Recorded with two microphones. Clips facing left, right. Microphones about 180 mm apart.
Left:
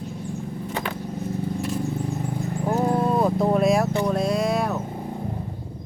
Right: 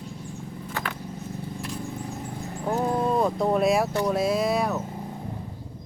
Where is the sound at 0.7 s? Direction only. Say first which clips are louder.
Left 3 dB; 25° left (ahead or behind).